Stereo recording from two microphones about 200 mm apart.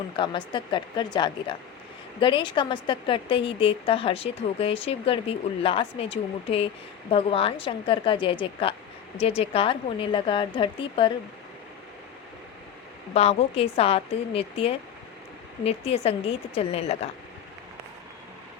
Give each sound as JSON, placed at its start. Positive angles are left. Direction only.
{"t": 0.2, "sound": "speech", "side_deg": 25}
{"t": 13.1, "sound": "a woman's voice", "side_deg": 30}